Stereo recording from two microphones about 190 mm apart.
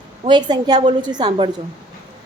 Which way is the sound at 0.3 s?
25° right (ahead or behind).